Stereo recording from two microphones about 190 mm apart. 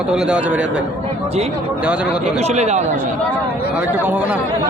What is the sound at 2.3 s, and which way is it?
Speech, 35° right (ahead or behind).